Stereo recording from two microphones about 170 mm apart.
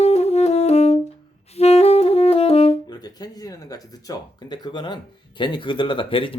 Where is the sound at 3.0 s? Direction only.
20° left (ahead or behind).